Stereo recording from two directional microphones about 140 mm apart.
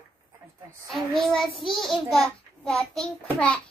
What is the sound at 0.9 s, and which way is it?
A child's voice, centre (ahead or behind).